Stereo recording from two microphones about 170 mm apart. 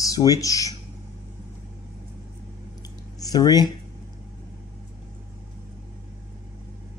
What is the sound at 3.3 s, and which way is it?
Speech, 25° left (ahead or behind).